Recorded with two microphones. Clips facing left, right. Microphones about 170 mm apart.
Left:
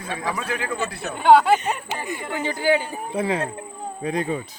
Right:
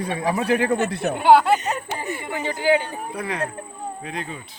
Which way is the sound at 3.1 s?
25° left (ahead or behind).